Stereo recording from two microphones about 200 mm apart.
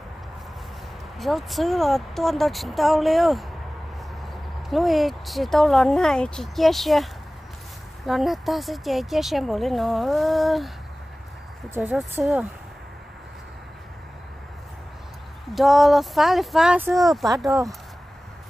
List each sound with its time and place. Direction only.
1.1 s speech: centre (ahead or behind)
4.6 s speech: centre (ahead or behind)
8.1 s speech: centre (ahead or behind)
11.7 s speech: 5° right (ahead or behind)
15.5 s speech: centre (ahead or behind)